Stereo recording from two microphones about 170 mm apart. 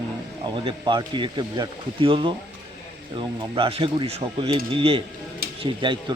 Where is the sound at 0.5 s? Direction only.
30° right (ahead or behind).